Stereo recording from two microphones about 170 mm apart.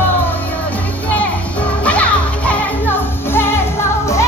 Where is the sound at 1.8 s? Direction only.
10° left (ahead or behind).